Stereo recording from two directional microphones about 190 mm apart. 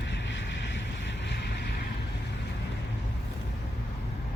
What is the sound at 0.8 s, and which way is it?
Vehicle, 70° left (ahead or behind).